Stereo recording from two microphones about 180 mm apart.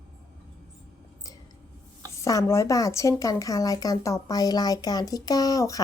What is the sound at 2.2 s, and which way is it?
A woman's voice, 15° left (ahead or behind).